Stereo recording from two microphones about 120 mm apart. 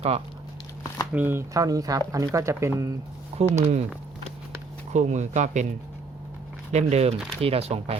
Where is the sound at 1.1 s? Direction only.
20° right (ahead or behind).